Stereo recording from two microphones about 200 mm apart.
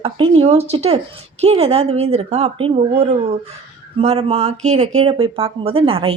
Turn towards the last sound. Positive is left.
turn(degrees=-30)  # may be behind; listen again after turning